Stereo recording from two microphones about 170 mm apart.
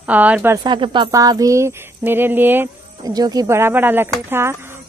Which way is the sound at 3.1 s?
20° right (ahead or behind).